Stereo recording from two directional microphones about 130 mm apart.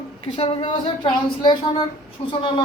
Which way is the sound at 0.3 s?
45° left (ahead or behind).